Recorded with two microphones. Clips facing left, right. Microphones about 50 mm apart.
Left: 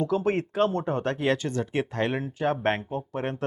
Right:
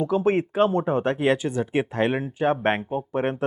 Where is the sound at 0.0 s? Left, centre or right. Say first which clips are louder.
Right 4 dB; centre.